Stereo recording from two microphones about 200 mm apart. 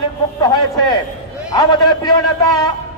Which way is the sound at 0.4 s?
20° left (ahead or behind).